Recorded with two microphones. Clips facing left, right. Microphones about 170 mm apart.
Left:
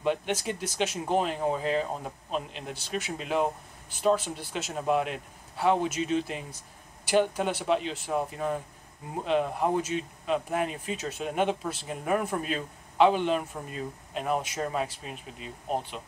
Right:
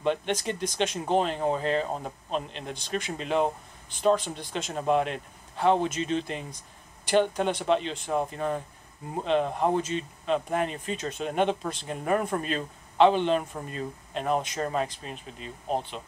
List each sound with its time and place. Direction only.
0.0 s speech: 10° left (ahead or behind)